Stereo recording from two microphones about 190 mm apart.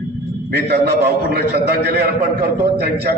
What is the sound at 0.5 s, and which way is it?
A man's voice, 60° right (ahead or behind).